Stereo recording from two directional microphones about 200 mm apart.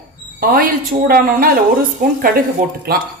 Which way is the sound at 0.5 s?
45° right (ahead or behind).